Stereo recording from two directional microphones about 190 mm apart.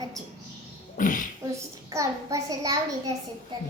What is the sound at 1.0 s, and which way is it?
Speech, 45° left (ahead or behind).